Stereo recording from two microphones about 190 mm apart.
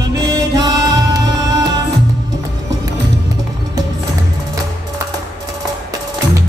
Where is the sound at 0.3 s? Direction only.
20° right (ahead or behind).